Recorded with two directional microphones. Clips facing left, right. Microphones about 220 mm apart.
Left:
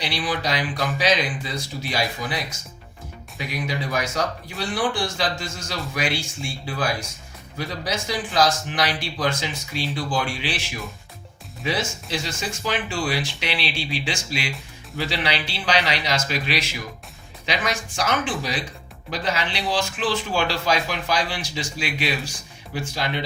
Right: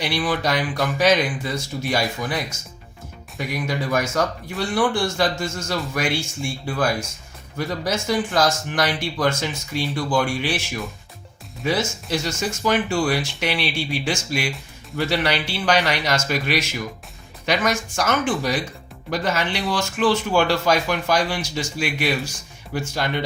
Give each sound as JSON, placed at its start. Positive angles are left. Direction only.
{"t": 0.0, "sound": "speech", "side_deg": -50}